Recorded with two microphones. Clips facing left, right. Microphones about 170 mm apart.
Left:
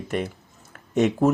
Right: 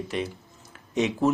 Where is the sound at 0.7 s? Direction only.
50° left (ahead or behind).